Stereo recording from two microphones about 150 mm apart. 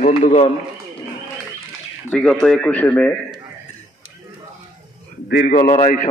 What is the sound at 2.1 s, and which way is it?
Speech, 5° left (ahead or behind).